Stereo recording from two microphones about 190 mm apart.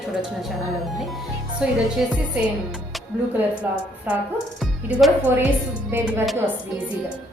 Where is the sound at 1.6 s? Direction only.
5° right (ahead or behind).